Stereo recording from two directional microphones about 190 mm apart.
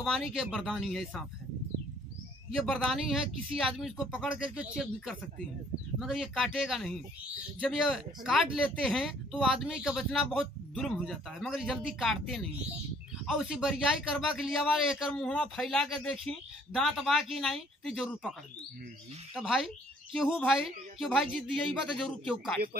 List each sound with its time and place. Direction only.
0.0 s speech: 5° right (ahead or behind)
2.5 s speech: centre (ahead or behind)
19.3 s speech: centre (ahead or behind)